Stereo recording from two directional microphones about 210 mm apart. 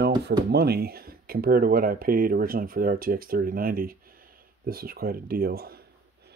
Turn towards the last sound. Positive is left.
turn(degrees=-45)  # may be behind; listen again after turning